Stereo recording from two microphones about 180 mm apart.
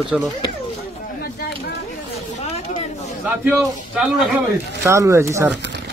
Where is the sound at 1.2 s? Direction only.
60° left (ahead or behind).